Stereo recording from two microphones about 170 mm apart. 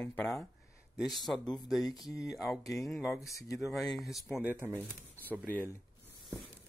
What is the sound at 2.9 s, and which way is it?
Speech, centre (ahead or behind).